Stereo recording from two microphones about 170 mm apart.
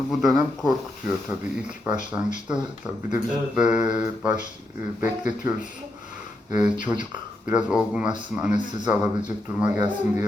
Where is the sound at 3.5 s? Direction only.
5° right (ahead or behind).